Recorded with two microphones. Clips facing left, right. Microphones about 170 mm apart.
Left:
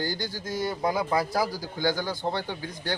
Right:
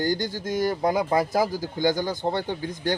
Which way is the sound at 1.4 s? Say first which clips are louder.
Right 4 dB; 50° right (ahead or behind).